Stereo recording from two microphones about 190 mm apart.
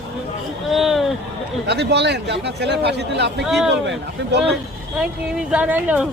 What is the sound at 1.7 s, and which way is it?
A man's voice, 60° right (ahead or behind).